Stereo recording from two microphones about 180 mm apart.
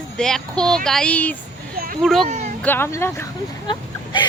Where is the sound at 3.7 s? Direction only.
25° left (ahead or behind).